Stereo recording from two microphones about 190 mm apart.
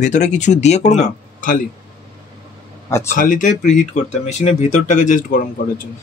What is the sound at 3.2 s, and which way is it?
Speech, 45° left (ahead or behind).